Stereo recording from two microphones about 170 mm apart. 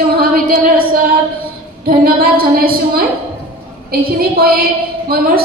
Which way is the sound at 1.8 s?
60° right (ahead or behind).